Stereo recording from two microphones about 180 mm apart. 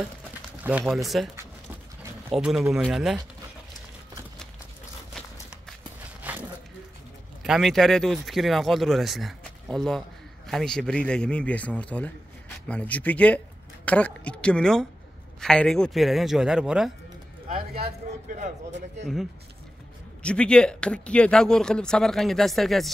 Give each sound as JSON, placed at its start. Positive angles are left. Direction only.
{"t": 0.7, "sound": "speech", "side_deg": -5}
{"t": 2.3, "sound": "speech", "side_deg": 0}
{"t": 5.1, "sound": "a sound", "side_deg": 0}
{"t": 6.2, "sound": "a sound", "side_deg": -10}
{"t": 7.4, "sound": "a woman's voice", "side_deg": 0}
{"t": 17.5, "sound": "speech", "side_deg": -55}
{"t": 20.2, "sound": "speech", "side_deg": 5}